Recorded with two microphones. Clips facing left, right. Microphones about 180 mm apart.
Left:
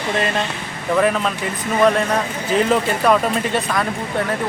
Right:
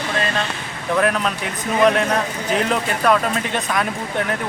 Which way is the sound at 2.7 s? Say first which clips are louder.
Left 2 dB; 5° left (ahead or behind).